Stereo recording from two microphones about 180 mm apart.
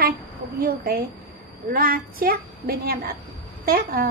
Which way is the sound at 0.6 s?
60° right (ahead or behind).